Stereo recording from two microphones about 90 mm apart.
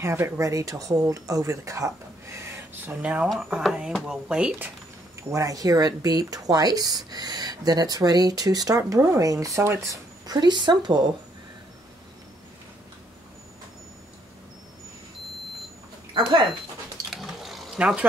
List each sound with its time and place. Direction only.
0.0 s speech: 30° right (ahead or behind)
3.0 s speech: 15° right (ahead or behind)
5.3 s speech: 40° right (ahead or behind)
10.2 s speech: 50° right (ahead or behind)
16.1 s speech: 60° right (ahead or behind)
17.1 s a sound: centre (ahead or behind)
17.7 s speech: 10° right (ahead or behind)